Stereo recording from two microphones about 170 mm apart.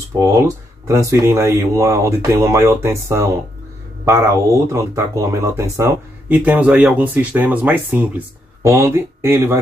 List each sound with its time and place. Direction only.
0.1 s speech: 20° right (ahead or behind)